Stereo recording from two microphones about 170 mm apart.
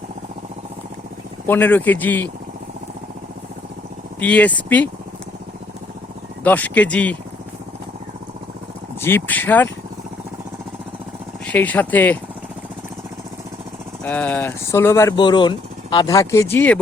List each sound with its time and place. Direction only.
1.5 s speech: 10° left (ahead or behind)
4.2 s speech: 10° left (ahead or behind)
6.4 s speech: 10° left (ahead or behind)
9.0 s speech: 10° left (ahead or behind)
11.4 s speech: 10° left (ahead or behind)
14.0 s speech: 10° left (ahead or behind)
15.1 s speech: 25° left (ahead or behind); by 16.8 s 10° left (ahead or behind)